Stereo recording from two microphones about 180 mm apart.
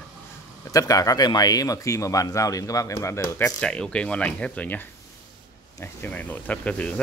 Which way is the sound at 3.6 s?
5° left (ahead or behind).